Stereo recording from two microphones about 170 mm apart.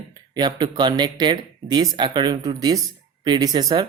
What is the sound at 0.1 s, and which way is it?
Speech, 25° right (ahead or behind).